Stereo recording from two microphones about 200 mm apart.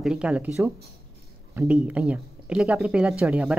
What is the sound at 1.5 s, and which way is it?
Speech, 10° right (ahead or behind).